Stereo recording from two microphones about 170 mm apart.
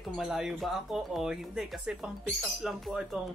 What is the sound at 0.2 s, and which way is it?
Speech, 5° right (ahead or behind).